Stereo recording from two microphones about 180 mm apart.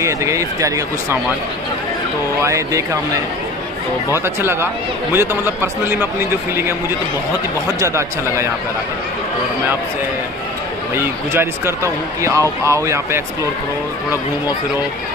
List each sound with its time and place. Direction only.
0.0 s speech: 15° right (ahead or behind)
2.4 s speech: 15° right (ahead or behind)
4.1 s speech: 15° right (ahead or behind)
7.8 s speech: 15° right (ahead or behind)
11.0 s speech: 15° right (ahead or behind)